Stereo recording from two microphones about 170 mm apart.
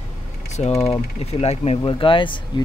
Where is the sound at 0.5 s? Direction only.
40° left (ahead or behind).